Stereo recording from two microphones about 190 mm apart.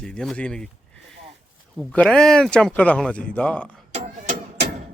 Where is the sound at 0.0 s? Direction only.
5° left (ahead or behind).